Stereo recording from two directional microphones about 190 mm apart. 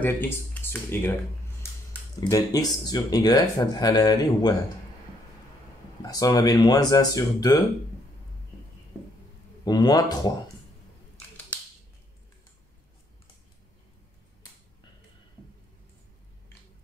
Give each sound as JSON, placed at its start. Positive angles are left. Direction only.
{"t": 0.0, "sound": "speech", "side_deg": 10}
{"t": 2.1, "sound": "speech", "side_deg": 20}
{"t": 6.0, "sound": "speech", "side_deg": 20}
{"t": 9.7, "sound": "speech", "side_deg": 20}